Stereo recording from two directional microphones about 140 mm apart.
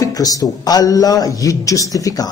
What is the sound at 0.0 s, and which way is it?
A man's voice, 25° left (ahead or behind).